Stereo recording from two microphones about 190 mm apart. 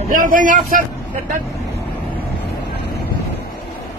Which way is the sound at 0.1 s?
45° right (ahead or behind).